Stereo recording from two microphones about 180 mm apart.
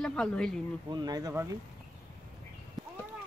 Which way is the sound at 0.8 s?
20° right (ahead or behind).